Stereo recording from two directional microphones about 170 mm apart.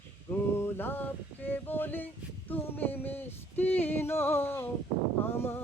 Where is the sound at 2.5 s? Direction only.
10° left (ahead or behind).